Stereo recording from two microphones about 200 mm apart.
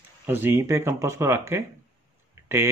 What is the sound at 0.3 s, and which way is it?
Speech, 10° right (ahead or behind).